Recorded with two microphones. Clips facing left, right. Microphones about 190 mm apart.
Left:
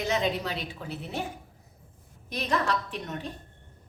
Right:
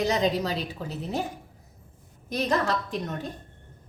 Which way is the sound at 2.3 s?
40° right (ahead or behind).